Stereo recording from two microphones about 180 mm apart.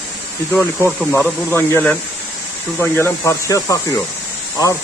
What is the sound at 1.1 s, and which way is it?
Speech, 15° left (ahead or behind).